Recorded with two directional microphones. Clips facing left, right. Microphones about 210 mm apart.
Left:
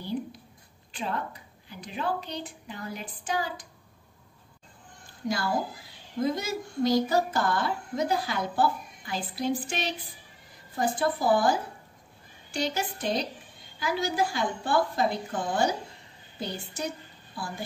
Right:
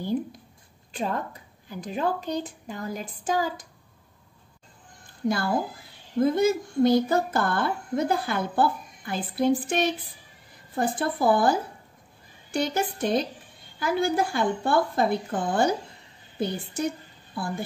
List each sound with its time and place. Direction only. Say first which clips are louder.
0.0 s a woman's voice: right 5 dB; 45° right (ahead or behind)
6.1 s a sound: right 7 dB; 55° right (ahead or behind)
12.5 s a woman's voice: right 4 dB; 55° right (ahead or behind)